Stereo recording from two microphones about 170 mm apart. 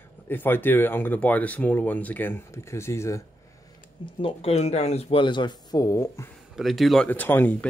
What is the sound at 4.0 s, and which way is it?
Speech, 30° left (ahead or behind).